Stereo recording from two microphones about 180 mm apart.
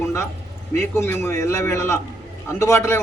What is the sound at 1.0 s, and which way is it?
A man's voice, 15° left (ahead or behind).